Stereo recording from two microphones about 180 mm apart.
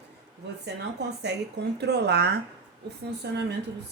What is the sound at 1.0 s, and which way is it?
A woman's voice, 70° right (ahead or behind).